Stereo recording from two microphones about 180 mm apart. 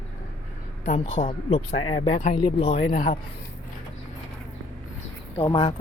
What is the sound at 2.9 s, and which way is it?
Speech, 45° left (ahead or behind).